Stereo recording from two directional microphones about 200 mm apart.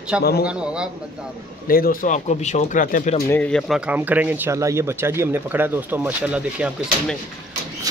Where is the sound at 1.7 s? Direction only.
45° left (ahead or behind).